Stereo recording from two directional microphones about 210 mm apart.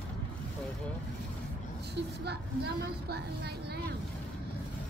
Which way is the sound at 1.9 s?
50° right (ahead or behind).